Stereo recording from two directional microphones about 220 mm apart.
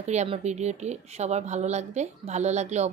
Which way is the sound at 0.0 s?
30° right (ahead or behind).